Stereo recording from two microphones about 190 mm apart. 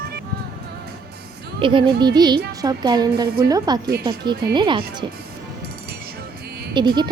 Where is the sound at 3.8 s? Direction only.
55° right (ahead or behind).